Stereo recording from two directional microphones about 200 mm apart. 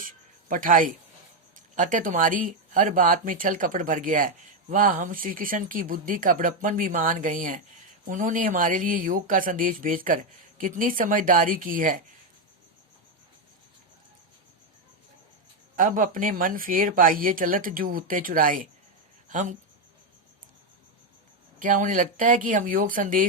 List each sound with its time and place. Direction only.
0.0 s a sound: 40° right (ahead or behind)
1.5 s speech: 40° right (ahead or behind)
15.7 s speech: 45° right (ahead or behind)
21.6 s speech: 40° right (ahead or behind)